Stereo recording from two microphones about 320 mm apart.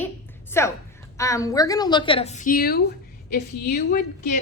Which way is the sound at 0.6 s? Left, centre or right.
Centre.